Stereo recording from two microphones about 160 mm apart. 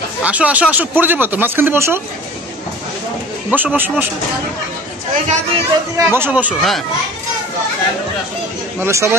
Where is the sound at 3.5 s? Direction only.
10° right (ahead or behind).